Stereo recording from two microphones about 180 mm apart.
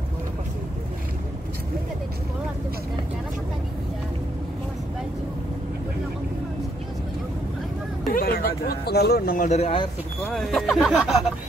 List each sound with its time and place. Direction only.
8.1 s speech: 55° left (ahead or behind)
9.5 s speech: 35° left (ahead or behind)
10.3 s speech: centre (ahead or behind)